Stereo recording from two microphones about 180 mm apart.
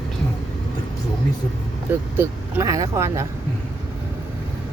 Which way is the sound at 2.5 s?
20° right (ahead or behind).